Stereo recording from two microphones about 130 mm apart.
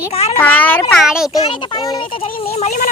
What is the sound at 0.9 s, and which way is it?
Speech, centre (ahead or behind).